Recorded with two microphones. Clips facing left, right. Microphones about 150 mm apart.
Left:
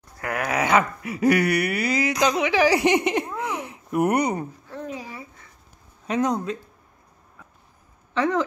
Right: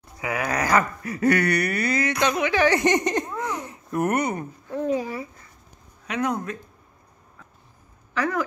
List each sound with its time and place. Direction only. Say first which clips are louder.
0.2 s a sound: left 1 dB; centre (ahead or behind)
2.2 s speech: left 1 dB; 10° left (ahead or behind)
6.0 s speech: left 3 dB; 25° left (ahead or behind)
8.1 s speech: left 3 dB; 25° left (ahead or behind)